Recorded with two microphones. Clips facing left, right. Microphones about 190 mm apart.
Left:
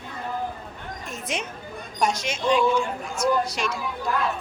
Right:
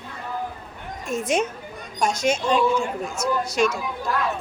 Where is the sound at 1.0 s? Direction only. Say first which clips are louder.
Right 9 dB; 45° right (ahead or behind).